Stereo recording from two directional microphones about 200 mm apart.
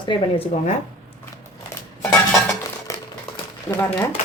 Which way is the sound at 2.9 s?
15° left (ahead or behind).